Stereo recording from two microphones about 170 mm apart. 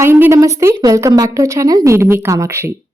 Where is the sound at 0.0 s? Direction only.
15° right (ahead or behind).